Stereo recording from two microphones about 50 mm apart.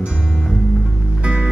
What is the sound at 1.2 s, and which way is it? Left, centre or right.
Music, centre.